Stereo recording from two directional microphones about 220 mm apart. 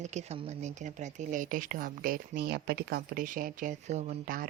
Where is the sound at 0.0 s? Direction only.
30° right (ahead or behind).